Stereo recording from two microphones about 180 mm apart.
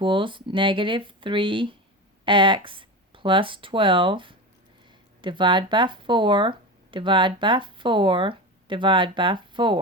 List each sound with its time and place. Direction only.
0.0 s speech: 30° right (ahead or behind)